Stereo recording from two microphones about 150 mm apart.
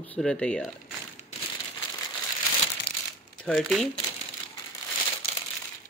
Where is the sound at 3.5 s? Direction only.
5° left (ahead or behind).